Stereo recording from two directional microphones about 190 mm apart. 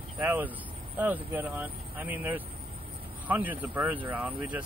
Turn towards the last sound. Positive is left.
turn(degrees=-5)  # may be behind; listen again after turning